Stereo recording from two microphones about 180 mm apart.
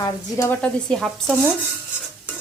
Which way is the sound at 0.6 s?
Centre (ahead or behind).